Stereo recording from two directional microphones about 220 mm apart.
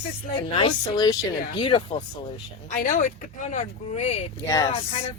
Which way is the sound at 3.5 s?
30° left (ahead or behind).